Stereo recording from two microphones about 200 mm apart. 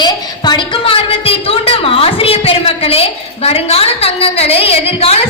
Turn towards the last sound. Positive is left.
turn(degrees=30)  # may be behind; listen again after turning